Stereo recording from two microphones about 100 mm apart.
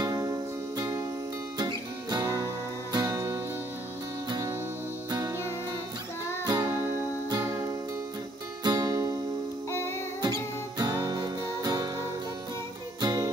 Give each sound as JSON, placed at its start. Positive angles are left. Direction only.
{"t": 0.0, "sound": "music", "side_deg": -35}
{"t": 2.2, "sound": "music", "side_deg": -30}
{"t": 6.4, "sound": "music", "side_deg": -40}
{"t": 6.8, "sound": "music", "side_deg": -25}
{"t": 9.7, "sound": "music", "side_deg": 25}
{"t": 10.2, "sound": "music", "side_deg": -45}